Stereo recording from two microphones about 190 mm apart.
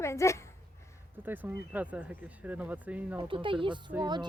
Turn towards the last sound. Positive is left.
turn(degrees=-25)  # may be behind; listen again after turning